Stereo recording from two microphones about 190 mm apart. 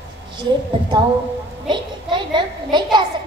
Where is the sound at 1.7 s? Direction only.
25° right (ahead or behind).